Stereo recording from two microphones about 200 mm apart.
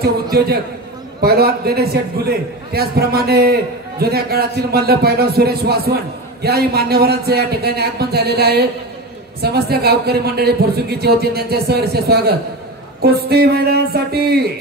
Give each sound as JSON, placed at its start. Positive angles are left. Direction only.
{"t": 0.0, "sound": "a man's voice", "side_deg": -50}